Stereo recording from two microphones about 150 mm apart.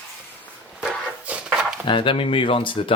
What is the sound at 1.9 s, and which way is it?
Speech, 35° left (ahead or behind).